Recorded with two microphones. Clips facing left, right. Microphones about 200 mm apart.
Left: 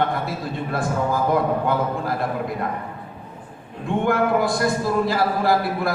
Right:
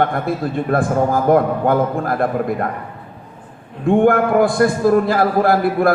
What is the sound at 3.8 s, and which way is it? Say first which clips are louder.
A man's voice: right 7 dB; 55° right (ahead or behind).